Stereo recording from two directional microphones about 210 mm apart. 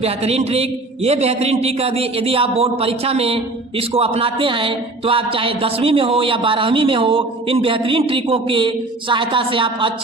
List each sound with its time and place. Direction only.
0.0 s a man's voice: 30° right (ahead or behind)